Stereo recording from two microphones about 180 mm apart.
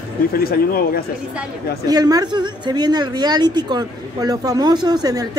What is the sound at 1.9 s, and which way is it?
Speech, 20° right (ahead or behind).